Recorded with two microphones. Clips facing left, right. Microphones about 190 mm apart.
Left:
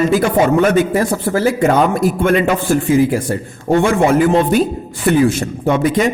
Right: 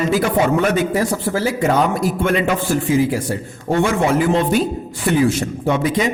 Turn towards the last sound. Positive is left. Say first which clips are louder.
# left 4 dB
turn(degrees=50)  # may be behind; listen again after turning